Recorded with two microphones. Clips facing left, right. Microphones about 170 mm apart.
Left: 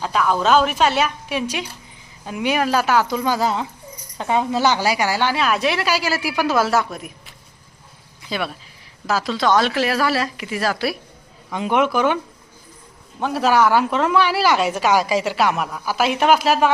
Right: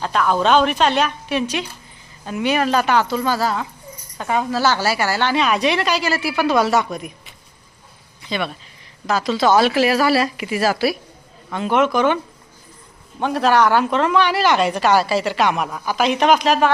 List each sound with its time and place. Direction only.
0.0 s a woman's voice: 5° left (ahead or behind)
11.4 s speech: 10° left (ahead or behind)